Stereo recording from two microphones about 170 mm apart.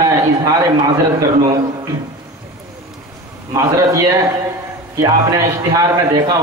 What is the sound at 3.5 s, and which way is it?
Speech, 20° right (ahead or behind).